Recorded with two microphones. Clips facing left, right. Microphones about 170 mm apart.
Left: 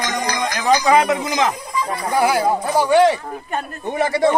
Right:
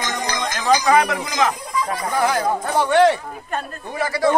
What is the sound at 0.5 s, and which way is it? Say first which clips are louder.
Speech: left 1 dB; 20° left (ahead or behind).